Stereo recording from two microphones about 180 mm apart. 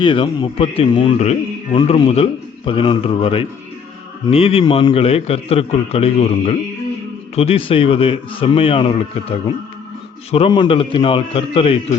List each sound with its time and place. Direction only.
0.0 s a man's voice: 25° left (ahead or behind)
10.3 s a man's voice: 30° left (ahead or behind)